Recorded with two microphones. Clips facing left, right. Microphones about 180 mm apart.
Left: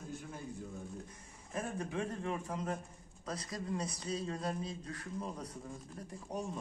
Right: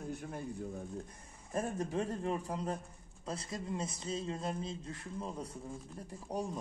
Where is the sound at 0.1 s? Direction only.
55° right (ahead or behind).